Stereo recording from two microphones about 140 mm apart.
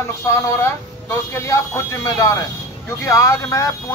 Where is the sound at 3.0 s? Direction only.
20° left (ahead or behind).